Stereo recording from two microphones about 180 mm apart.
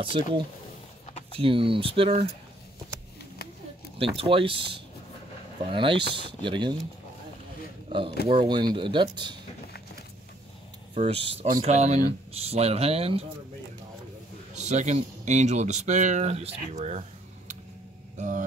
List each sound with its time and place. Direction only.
0.0 s speech: 30° right (ahead or behind)
4.0 s speech: 30° right (ahead or behind)
8.3 s speech: 25° right (ahead or behind)
11.0 s speech: 30° right (ahead or behind)
11.4 s speech: 40° right (ahead or behind)
14.5 s speech: 40° right (ahead or behind)
18.1 s mantra: 45° right (ahead or behind)